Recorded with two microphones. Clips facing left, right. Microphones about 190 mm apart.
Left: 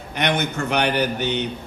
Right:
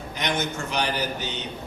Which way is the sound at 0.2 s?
60° left (ahead or behind).